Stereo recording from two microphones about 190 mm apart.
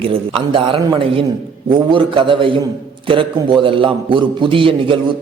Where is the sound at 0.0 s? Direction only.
30° right (ahead or behind).